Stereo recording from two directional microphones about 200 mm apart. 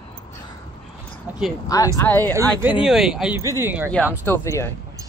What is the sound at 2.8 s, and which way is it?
Speech, centre (ahead or behind).